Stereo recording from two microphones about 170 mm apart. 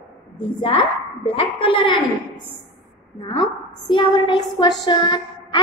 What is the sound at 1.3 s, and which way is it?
Speech, 30° left (ahead or behind).